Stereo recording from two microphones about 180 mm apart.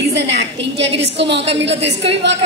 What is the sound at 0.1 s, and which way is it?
A woman's voice, 75° right (ahead or behind).